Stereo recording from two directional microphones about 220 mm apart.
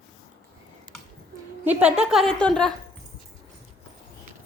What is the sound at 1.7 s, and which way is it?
A woman's voice, 5° right (ahead or behind).